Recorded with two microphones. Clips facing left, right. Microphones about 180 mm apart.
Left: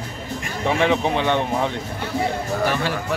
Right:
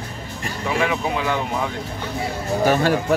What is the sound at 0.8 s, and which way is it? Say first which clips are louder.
Speech: left 2 dB; 30° left (ahead or behind).